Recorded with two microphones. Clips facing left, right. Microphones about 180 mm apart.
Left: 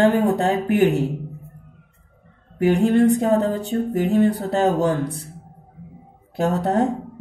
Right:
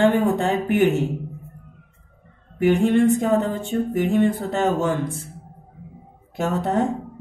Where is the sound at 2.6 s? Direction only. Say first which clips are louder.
Left 1 dB; 35° left (ahead or behind).